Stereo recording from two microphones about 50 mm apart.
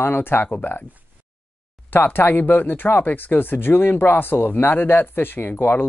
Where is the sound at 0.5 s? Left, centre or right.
Left.